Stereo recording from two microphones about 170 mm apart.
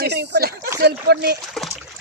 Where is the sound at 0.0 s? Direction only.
80° right.